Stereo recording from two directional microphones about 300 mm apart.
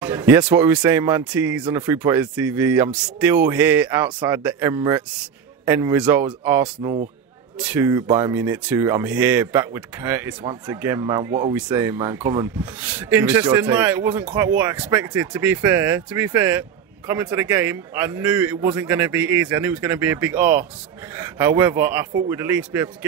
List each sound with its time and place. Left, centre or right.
0.0 s speech: centre
6.8 s speech: centre
7.5 s speech: centre